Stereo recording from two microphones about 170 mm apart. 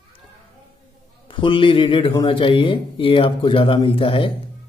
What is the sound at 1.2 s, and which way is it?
A man's voice, 30° left (ahead or behind).